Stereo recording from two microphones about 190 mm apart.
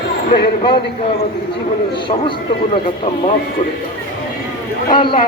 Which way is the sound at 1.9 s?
25° left (ahead or behind).